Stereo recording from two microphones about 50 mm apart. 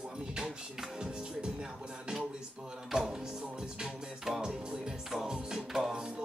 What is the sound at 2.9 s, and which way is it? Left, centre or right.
Music, centre.